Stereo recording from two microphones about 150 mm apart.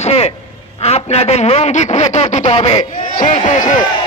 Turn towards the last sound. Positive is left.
turn(degrees=55)  # may be behind; listen again after turning